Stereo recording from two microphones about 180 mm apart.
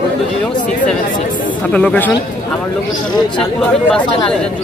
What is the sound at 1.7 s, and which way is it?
Speech, 5° left (ahead or behind).